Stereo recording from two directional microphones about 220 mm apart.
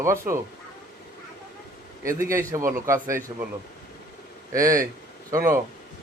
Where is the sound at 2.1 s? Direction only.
15° right (ahead or behind).